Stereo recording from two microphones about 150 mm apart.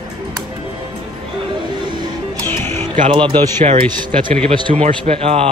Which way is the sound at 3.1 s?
35° right (ahead or behind).